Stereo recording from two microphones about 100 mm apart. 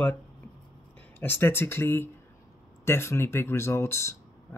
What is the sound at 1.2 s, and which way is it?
Speech, 20° left (ahead or behind).